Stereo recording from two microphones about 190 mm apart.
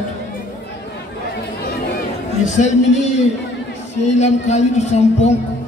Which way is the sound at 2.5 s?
40° left (ahead or behind).